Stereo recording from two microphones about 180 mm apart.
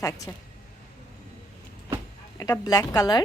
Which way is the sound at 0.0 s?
15° left (ahead or behind).